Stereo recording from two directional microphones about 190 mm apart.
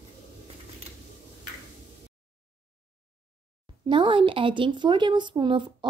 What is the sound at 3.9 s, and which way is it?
Speech, 25° right (ahead or behind).